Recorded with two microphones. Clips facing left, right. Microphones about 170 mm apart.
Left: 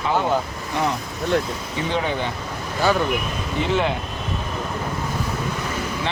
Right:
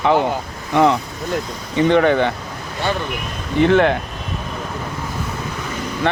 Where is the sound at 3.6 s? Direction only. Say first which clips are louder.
Right 8 dB; 60° right (ahead or behind).